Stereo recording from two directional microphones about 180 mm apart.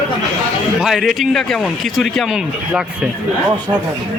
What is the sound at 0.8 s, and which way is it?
A man's voice, centre (ahead or behind).